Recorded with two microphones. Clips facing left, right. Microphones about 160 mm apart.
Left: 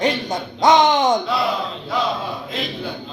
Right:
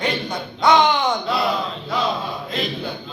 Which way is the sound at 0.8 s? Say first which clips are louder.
Left 3 dB; 45° left (ahead or behind).